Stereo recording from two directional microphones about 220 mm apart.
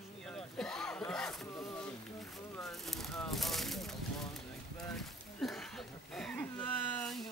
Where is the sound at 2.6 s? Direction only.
Centre (ahead or behind).